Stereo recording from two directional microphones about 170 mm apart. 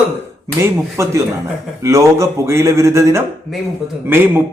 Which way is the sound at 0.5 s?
15° right (ahead or behind).